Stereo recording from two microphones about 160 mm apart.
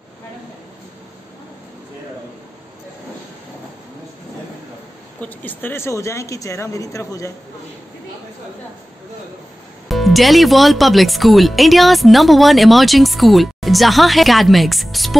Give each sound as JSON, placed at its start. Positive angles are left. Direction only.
{"t": 5.2, "sound": "speech", "side_deg": 10}
{"t": 9.8, "sound": "speech", "side_deg": 0}